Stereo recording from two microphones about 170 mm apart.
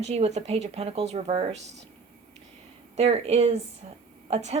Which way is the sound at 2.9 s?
35° right (ahead or behind).